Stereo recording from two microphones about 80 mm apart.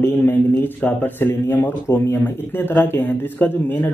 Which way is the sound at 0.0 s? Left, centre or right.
Left.